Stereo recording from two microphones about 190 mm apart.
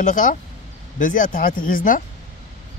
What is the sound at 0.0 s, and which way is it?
Speech, 45° left (ahead or behind).